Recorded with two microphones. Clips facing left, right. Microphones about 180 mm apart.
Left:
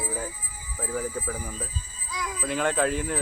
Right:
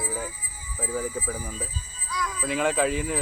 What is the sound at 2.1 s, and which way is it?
Speech, 20° left (ahead or behind).